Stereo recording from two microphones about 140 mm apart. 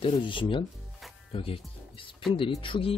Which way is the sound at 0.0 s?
35° left (ahead or behind).